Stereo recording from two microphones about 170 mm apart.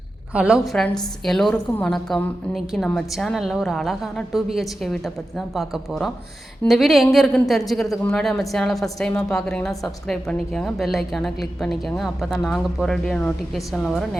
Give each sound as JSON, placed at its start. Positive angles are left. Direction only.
{"t": 0.3, "sound": "a woman's voice", "side_deg": -5}